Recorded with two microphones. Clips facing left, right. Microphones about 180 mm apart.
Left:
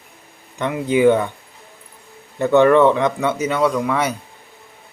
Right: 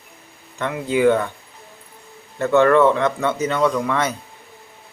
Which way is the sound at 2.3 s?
15° left (ahead or behind).